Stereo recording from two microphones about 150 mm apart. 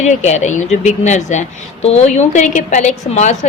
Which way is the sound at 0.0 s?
50° left (ahead or behind).